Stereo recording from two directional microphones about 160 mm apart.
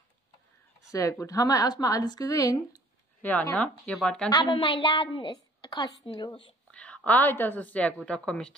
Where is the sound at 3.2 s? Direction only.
10° left (ahead or behind).